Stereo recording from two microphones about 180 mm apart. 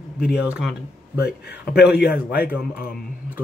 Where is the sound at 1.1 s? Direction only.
65° left (ahead or behind).